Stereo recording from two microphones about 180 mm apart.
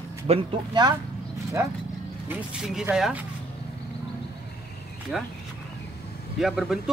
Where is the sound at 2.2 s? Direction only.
5° right (ahead or behind).